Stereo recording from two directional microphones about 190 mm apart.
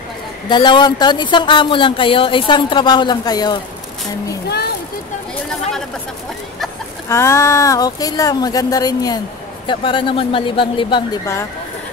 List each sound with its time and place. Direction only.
0.5 s speech: 25° left (ahead or behind)
7.1 s speech: 15° left (ahead or behind)